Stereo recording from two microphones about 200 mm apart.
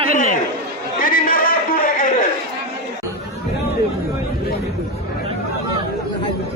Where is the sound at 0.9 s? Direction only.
45° left (ahead or behind).